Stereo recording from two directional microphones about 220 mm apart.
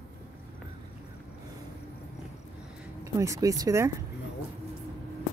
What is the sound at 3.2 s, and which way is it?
Speech, 15° right (ahead or behind).